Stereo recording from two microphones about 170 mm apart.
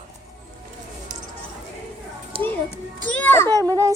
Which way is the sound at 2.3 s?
30° right (ahead or behind).